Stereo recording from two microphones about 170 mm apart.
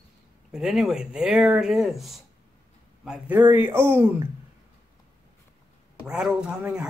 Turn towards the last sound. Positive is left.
turn(degrees=-5)  # may be behind; listen again after turning